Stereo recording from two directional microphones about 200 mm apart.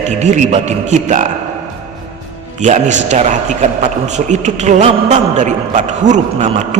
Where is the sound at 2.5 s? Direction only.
35° right (ahead or behind).